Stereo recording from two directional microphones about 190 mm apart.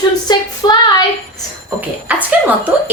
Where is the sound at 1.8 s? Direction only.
10° right (ahead or behind).